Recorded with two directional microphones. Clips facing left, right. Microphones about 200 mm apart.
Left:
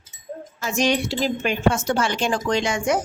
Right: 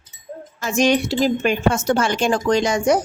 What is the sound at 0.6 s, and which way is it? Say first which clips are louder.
Speech: right 4 dB; 45° right (ahead or behind).